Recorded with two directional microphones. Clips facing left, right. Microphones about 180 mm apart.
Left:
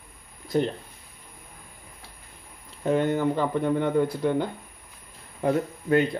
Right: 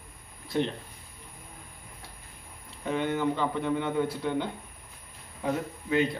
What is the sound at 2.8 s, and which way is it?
Speech, 45° left (ahead or behind).